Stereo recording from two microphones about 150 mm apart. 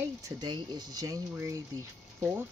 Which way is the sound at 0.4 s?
30° right (ahead or behind).